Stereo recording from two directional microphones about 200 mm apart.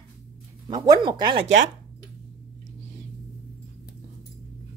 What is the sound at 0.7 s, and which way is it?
Speech, 20° right (ahead or behind).